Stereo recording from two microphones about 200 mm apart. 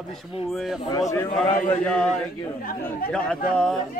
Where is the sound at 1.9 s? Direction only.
5° left (ahead or behind).